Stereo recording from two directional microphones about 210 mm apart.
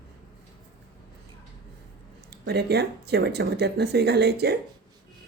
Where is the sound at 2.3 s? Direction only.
50° right (ahead or behind).